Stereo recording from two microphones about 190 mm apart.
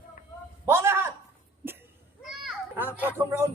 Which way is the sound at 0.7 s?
15° right (ahead or behind).